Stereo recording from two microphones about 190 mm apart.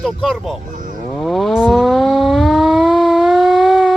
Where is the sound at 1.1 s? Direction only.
Centre (ahead or behind).